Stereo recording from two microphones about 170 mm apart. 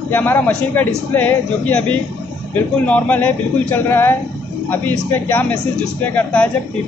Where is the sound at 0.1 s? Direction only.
10° left (ahead or behind).